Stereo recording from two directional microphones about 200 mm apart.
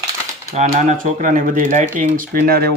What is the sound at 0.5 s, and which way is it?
Speech, 35° right (ahead or behind).